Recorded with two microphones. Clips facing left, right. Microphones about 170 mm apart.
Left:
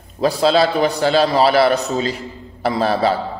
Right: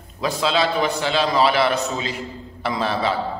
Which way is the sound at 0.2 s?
40° left (ahead or behind).